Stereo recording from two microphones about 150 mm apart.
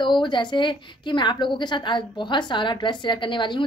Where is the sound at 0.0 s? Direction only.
30° left (ahead or behind).